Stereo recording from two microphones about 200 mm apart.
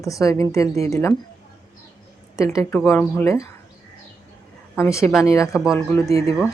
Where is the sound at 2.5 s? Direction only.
15° left (ahead or behind).